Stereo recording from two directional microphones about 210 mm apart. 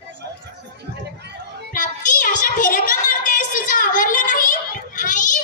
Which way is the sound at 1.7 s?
40° left (ahead or behind).